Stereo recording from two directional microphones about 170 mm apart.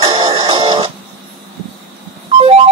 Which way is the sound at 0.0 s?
30° right (ahead or behind).